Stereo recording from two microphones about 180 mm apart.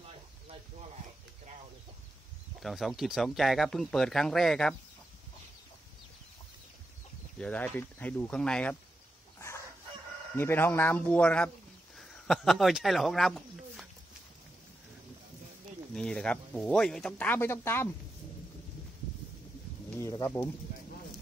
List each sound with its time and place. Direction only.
0.0 s a sound: 35° right (ahead or behind)
2.6 s speech: centre (ahead or behind)
7.3 s speech: 10° left (ahead or behind)
10.3 s speech: 10° left (ahead or behind)
15.9 s speech: 5° left (ahead or behind)
20.0 s speech: 15° left (ahead or behind)